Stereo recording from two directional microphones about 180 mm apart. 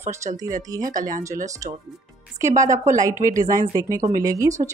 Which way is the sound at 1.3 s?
20° right (ahead or behind).